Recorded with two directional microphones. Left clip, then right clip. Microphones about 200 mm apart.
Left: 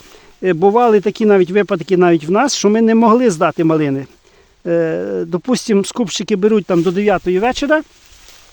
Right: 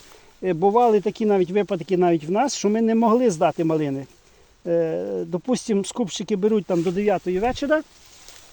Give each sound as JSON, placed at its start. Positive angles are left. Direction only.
{"t": 0.4, "sound": "speech", "side_deg": 35}